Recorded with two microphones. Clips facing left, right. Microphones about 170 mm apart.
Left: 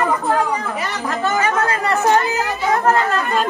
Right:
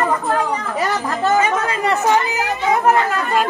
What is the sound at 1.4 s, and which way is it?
Chatter, 20° right (ahead or behind).